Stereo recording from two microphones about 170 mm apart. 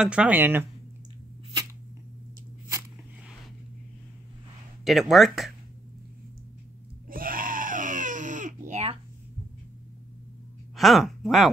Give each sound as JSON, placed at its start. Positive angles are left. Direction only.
{"t": 0.0, "sound": "speech", "side_deg": -5}
{"t": 4.8, "sound": "speech", "side_deg": 0}
{"t": 7.1, "sound": "crying", "side_deg": -55}
{"t": 10.8, "sound": "speech", "side_deg": 0}